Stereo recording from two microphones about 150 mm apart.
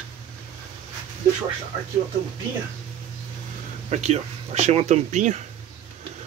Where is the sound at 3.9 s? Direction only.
45° right (ahead or behind).